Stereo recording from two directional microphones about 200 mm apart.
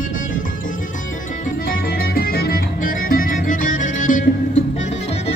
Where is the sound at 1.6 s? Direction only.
50° left (ahead or behind).